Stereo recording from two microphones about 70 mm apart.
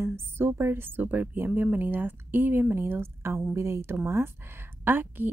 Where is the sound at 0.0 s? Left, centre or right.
Right.